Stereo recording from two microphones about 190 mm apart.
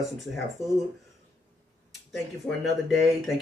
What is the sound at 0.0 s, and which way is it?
Speech, centre (ahead or behind).